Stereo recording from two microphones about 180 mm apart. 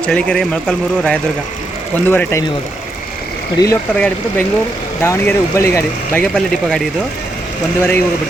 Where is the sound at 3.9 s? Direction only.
10° left (ahead or behind).